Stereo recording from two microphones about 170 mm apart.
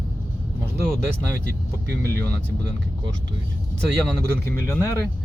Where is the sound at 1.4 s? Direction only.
65° right (ahead or behind).